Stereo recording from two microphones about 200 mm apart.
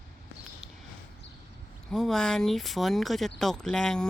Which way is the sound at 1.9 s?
Centre (ahead or behind).